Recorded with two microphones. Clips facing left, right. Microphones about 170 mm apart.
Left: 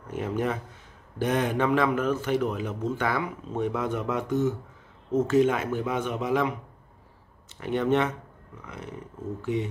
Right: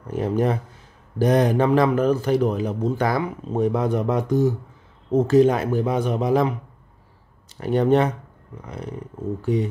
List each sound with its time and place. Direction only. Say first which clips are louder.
0.1 s a man's voice: right 6 dB; 35° right (ahead or behind)
7.6 s a man's voice: right 6 dB; 35° right (ahead or behind)